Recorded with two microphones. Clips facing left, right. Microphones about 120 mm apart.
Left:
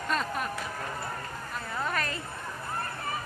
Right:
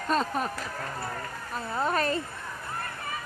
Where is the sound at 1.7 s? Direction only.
35° right (ahead or behind).